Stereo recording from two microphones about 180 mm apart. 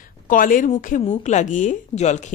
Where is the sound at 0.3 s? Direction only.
50° left (ahead or behind).